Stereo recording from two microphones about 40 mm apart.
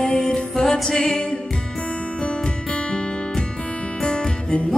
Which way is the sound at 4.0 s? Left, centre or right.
Left.